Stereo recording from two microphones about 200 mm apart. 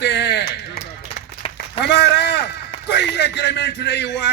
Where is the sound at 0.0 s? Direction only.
55° left (ahead or behind).